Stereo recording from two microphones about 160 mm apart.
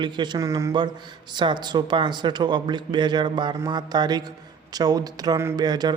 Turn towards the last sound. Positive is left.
turn(degrees=-25)  # may be behind; listen again after turning